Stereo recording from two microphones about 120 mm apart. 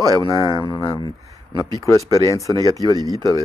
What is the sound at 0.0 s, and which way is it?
Speech, 30° right (ahead or behind).